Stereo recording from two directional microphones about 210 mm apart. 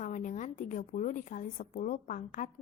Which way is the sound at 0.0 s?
35° left (ahead or behind).